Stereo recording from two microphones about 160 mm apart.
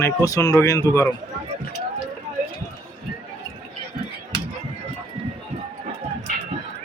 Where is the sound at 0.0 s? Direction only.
20° left (ahead or behind).